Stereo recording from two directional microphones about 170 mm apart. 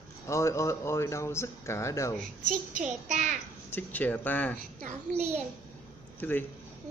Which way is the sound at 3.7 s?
10° left (ahead or behind).